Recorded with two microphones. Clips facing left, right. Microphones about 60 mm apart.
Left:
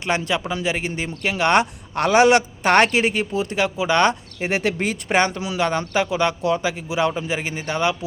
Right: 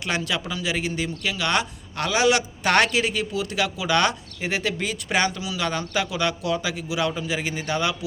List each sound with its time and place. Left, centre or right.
0.0 s a man's voice: left
4.4 s a man's voice: left